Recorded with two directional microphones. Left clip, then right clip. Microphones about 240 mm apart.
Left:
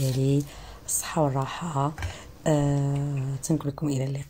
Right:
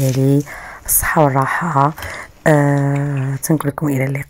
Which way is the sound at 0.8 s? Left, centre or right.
Right.